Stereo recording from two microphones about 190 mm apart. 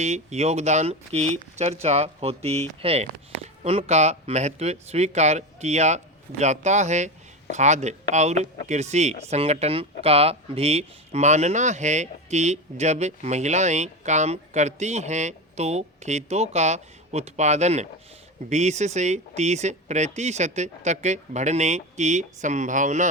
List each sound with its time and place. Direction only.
0.0 s speech: 35° right (ahead or behind)